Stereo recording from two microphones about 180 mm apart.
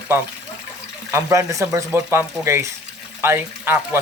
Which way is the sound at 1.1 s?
15° right (ahead or behind).